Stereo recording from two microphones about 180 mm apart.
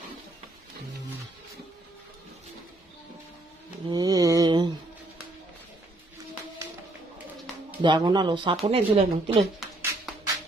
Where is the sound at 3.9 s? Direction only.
20° right (ahead or behind).